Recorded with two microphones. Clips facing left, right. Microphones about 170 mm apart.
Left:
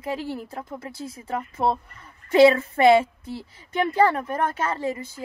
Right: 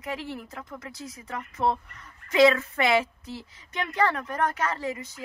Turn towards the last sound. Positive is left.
turn(degrees=30)  # may be behind; listen again after turning